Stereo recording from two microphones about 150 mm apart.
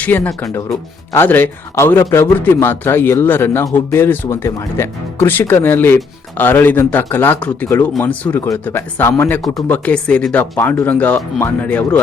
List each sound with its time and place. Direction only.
0.0 s a man's voice: 10° left (ahead or behind)